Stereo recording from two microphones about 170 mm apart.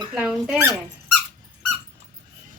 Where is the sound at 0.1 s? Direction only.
5° right (ahead or behind).